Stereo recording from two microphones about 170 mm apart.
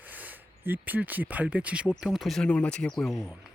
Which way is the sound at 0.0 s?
10° right (ahead or behind).